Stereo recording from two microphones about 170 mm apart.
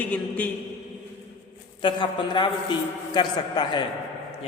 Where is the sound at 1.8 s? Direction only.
25° left (ahead or behind).